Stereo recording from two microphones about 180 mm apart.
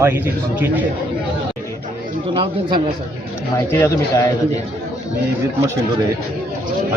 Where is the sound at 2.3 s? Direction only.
25° right (ahead or behind).